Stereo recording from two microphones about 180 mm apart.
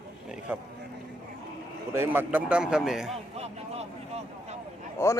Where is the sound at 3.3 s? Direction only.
35° right (ahead or behind).